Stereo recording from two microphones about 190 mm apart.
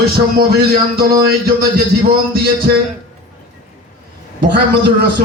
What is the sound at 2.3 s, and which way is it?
Speech, 55° right (ahead or behind).